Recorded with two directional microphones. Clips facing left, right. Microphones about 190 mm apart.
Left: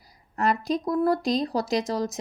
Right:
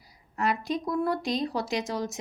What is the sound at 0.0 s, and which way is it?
Speech, 40° left (ahead or behind).